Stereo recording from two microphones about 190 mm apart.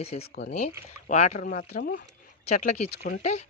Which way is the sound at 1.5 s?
55° left (ahead or behind).